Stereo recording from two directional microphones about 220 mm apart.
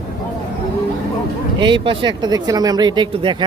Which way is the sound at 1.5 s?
20° right (ahead or behind).